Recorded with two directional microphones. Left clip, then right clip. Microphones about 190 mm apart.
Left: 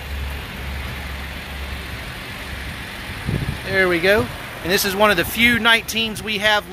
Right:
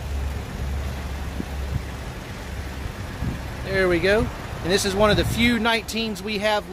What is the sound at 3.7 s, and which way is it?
Speech, 35° left (ahead or behind).